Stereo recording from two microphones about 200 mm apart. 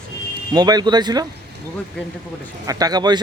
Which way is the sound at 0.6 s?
20° right (ahead or behind).